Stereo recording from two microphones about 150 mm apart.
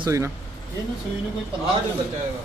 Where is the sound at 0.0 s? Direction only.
20° right (ahead or behind).